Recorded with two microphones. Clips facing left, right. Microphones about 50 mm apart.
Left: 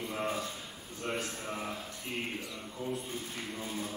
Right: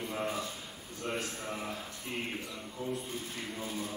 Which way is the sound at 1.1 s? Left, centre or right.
Centre.